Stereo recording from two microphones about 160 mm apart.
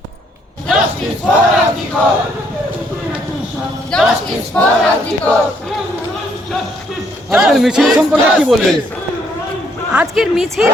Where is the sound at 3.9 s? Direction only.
5° left (ahead or behind).